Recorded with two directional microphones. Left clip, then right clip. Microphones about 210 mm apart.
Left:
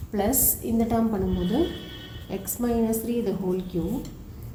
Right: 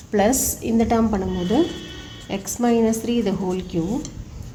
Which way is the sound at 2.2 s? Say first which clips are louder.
Right 7 dB; 45° right (ahead or behind).